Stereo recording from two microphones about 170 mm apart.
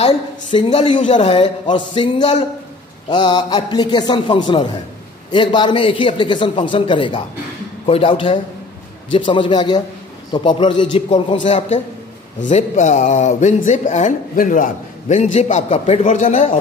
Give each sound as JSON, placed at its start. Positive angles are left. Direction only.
{"t": 0.6, "sound": "a man's voice", "side_deg": 40}
{"t": 11.4, "sound": "a man's voice", "side_deg": 40}